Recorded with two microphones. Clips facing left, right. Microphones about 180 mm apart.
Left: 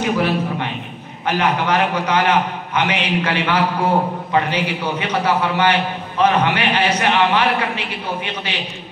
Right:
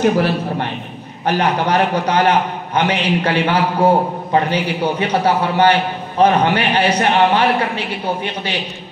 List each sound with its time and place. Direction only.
0.0 s a man's voice: 45° right (ahead or behind)